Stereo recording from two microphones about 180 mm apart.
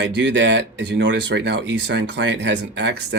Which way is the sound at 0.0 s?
75° right (ahead or behind).